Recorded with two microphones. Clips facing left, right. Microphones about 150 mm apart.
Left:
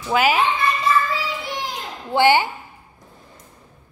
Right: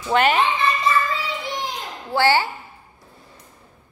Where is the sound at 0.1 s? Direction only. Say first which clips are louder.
Even; 5° left (ahead or behind).